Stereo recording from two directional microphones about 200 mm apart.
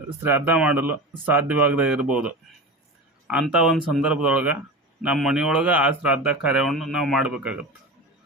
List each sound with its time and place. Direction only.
0.2 s speech: 10° right (ahead or behind)